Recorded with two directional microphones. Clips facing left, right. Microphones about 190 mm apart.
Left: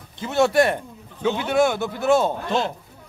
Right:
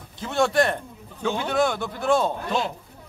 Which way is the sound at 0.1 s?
5° left (ahead or behind).